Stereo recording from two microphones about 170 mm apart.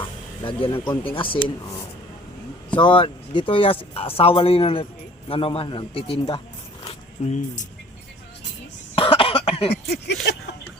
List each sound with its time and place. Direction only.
0.0 s music: 30° left (ahead or behind)
1.0 s speech: 30° left (ahead or behind)
2.7 s speech: 30° left (ahead or behind)
6.8 s a sound: 45° left (ahead or behind)
9.0 s cough: 35° left (ahead or behind)
9.7 s a sound: 75° left (ahead or behind)